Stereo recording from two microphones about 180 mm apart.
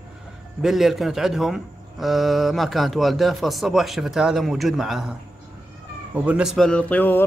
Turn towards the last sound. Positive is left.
turn(degrees=10)  # may be behind; listen again after turning